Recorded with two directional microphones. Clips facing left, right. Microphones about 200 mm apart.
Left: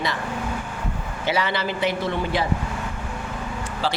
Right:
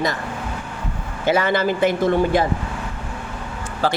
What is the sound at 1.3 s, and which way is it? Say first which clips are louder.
Speech: right 6 dB; 50° right (ahead or behind).